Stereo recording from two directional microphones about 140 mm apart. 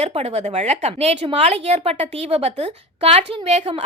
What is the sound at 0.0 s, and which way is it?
A woman's voice, 50° right (ahead or behind).